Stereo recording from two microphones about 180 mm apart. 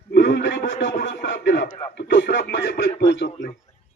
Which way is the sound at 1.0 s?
75° left (ahead or behind).